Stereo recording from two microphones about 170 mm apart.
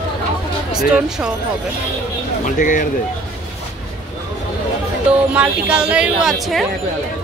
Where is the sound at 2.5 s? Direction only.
50° left (ahead or behind).